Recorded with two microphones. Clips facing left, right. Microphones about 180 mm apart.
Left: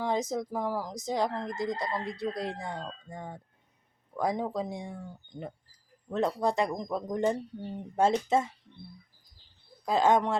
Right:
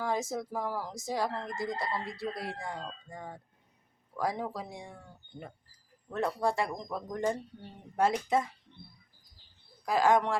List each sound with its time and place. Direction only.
0.0 s speech: 20° left (ahead or behind)
9.8 s speech: 25° left (ahead or behind)